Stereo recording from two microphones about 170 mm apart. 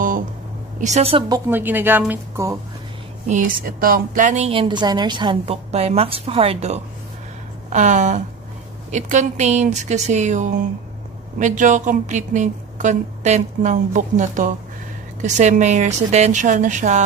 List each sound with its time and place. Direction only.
0.7 s a woman's voice: 40° right (ahead or behind)
1.5 s speech: 10° right (ahead or behind)
3.3 s a woman's voice: 50° right (ahead or behind)
4.5 s a woman's voice: 30° right (ahead or behind); by 17.0 s 45° right (ahead or behind)